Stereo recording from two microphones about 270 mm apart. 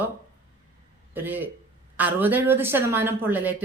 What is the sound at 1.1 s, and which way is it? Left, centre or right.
A man's voice, centre.